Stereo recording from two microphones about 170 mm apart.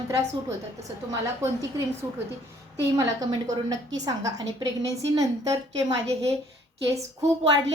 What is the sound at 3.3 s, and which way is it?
A woman's voice, 20° right (ahead or behind).